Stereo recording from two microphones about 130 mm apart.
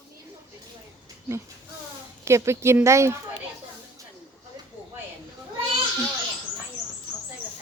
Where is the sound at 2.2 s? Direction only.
20° right (ahead or behind).